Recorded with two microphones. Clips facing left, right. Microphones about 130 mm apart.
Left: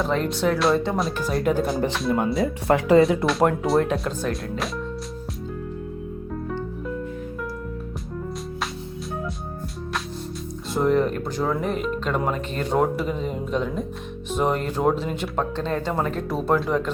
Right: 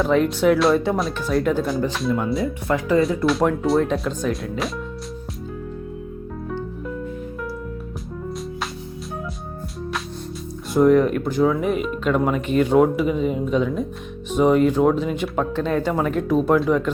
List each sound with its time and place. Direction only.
0.0 s speech: centre (ahead or behind)
2.0 s speech: 25° left (ahead or behind)
2.7 s speech: 75° left (ahead or behind)
3.2 s speech: centre (ahead or behind)
10.8 s speech: centre (ahead or behind)